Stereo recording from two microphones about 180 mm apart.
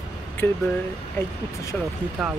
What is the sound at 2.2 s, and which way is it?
Speech, centre (ahead or behind).